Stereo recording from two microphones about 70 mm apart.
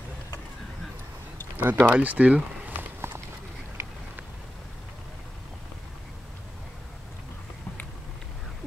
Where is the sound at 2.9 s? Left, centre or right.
Right.